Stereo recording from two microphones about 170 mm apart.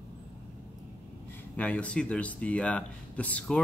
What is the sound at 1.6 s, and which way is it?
Speech, 5° left (ahead or behind).